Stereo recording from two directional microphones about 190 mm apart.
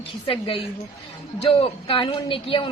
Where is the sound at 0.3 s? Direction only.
30° left (ahead or behind).